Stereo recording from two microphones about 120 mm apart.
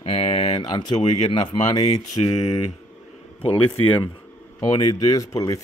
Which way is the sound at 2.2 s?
55° left (ahead or behind).